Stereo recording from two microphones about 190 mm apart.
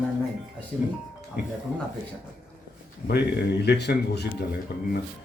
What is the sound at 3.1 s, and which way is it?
Speech, 60° left (ahead or behind).